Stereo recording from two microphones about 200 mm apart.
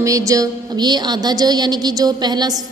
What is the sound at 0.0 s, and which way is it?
A woman's voice, 15° right (ahead or behind).